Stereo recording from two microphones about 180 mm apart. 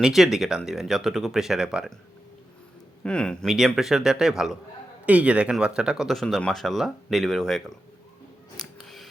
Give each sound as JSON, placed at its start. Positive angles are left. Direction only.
{"t": 0.0, "sound": "speech", "side_deg": 0}
{"t": 3.0, "sound": "speech", "side_deg": 5}
{"t": 8.5, "sound": "camera", "side_deg": 0}